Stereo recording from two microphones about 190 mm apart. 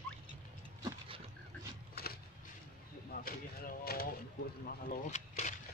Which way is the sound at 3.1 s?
50° left (ahead or behind).